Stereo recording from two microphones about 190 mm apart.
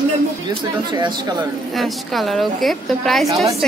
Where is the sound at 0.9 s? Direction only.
25° right (ahead or behind).